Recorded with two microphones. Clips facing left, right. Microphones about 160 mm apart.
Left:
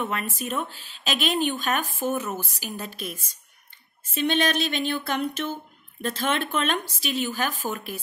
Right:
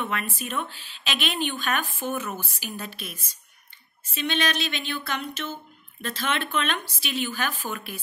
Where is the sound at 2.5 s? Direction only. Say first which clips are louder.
Left 2 dB; 40° left (ahead or behind).